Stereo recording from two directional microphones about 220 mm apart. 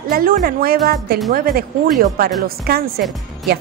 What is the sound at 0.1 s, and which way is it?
A woman's voice, 40° right (ahead or behind).